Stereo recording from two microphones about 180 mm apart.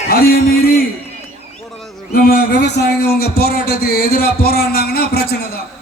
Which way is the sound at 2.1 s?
55° left (ahead or behind).